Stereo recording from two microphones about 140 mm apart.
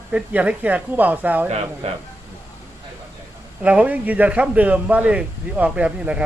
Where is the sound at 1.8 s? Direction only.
45° right (ahead or behind).